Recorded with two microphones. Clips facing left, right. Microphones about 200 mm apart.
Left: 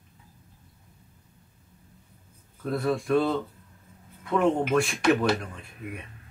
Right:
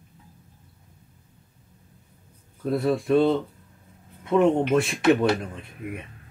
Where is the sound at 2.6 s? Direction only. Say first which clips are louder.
Right 3 dB; 25° right (ahead or behind).